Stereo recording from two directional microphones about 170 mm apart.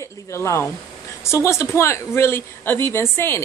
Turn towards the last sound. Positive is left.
turn(degrees=15)  # may be behind; listen again after turning